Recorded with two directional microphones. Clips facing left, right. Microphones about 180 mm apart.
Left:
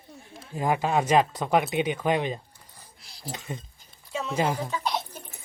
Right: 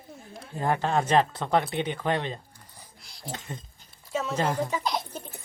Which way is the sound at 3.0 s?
Centre (ahead or behind).